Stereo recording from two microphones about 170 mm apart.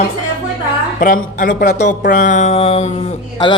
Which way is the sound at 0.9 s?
55° left (ahead or behind).